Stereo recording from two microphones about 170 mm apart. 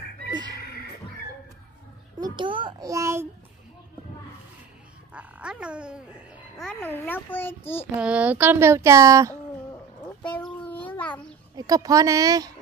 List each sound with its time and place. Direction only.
2.1 s a child's voice: 25° right (ahead or behind)
5.1 s dog: 5° right (ahead or behind)
6.8 s a child's voice: 10° left (ahead or behind)
7.9 s a sound: 10° right (ahead or behind)
10.2 s a sound: 5° left (ahead or behind)
11.5 s a child's voice: 20° right (ahead or behind)